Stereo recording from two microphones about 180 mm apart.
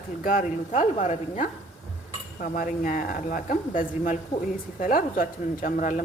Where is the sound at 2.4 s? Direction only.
50° left (ahead or behind).